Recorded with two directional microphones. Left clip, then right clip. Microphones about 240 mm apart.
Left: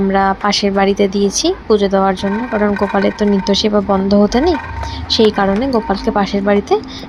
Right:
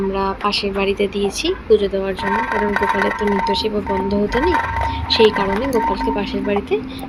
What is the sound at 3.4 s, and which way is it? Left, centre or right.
A woman's voice, left.